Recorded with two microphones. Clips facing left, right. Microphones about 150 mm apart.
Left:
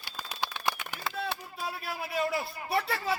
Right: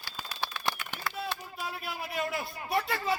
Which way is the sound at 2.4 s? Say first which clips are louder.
Left 1 dB; centre (ahead or behind).